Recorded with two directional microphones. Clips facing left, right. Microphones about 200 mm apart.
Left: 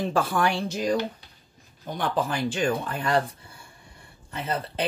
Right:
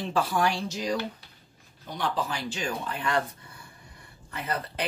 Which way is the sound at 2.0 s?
55° left (ahead or behind).